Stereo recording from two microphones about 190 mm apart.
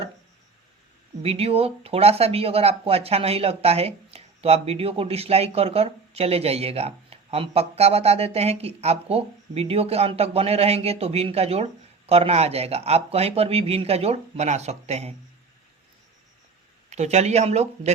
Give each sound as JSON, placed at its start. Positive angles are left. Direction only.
{"t": 1.2, "sound": "speech", "side_deg": -30}
{"t": 16.9, "sound": "speech", "side_deg": -35}